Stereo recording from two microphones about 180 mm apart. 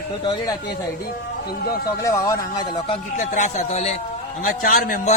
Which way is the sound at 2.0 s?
15° left (ahead or behind).